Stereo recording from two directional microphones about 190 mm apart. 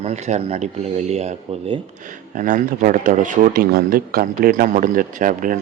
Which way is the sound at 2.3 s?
45° right (ahead or behind).